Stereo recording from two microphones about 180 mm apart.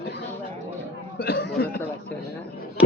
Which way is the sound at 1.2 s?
65° left (ahead or behind).